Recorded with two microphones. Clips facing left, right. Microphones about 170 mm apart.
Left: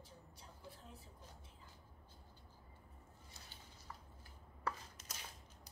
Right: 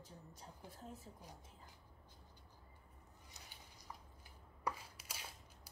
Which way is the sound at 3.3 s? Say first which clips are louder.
Right 1 dB; 15° right (ahead or behind).